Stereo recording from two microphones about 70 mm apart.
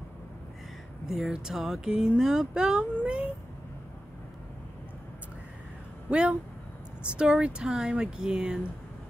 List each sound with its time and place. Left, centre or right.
1.0 s speech: centre; by 3.3 s right
6.0 s speech: centre